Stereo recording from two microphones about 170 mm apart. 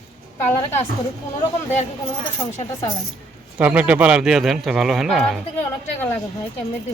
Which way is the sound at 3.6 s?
5° right (ahead or behind).